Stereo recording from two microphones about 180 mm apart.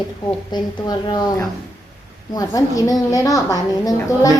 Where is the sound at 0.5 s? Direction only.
20° left (ahead or behind).